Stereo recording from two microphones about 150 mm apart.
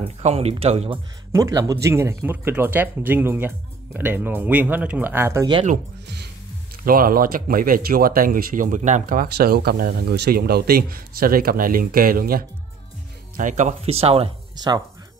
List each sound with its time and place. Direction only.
0.2 s speech: 45° right (ahead or behind)
1.3 s speech: 20° right (ahead or behind)
6.8 s speech: 75° right (ahead or behind)
13.4 s speech: 55° right (ahead or behind)